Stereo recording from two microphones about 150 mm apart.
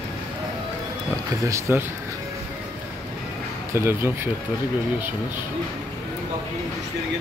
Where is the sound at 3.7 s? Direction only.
15° right (ahead or behind).